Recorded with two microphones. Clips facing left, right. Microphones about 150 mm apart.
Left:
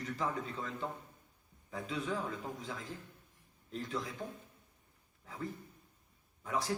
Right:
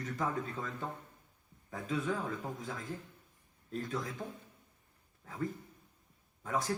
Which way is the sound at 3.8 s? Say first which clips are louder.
Right 1 dB; 50° right (ahead or behind).